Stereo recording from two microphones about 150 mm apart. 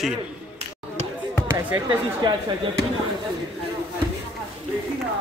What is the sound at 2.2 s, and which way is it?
Speech, 30° right (ahead or behind).